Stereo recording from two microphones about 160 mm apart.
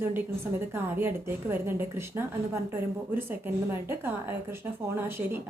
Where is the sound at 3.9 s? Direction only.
15° right (ahead or behind).